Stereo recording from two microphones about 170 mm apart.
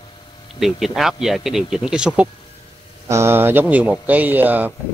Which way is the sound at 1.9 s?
5° right (ahead or behind).